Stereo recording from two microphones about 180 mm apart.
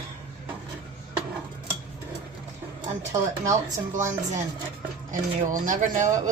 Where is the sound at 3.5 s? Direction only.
45° right (ahead or behind).